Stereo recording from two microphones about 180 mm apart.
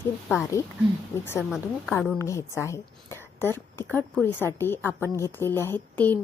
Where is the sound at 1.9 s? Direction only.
5° left (ahead or behind).